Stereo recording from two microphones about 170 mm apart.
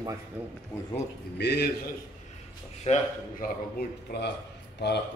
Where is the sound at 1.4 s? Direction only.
80° left.